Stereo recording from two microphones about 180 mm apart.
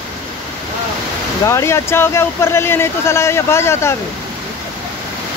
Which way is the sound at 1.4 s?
15° left (ahead or behind).